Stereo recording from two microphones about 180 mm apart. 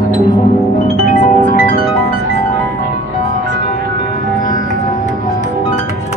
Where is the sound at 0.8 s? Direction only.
45° left (ahead or behind).